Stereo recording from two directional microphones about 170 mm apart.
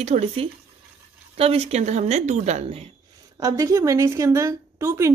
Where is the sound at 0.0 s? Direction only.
40° right (ahead or behind).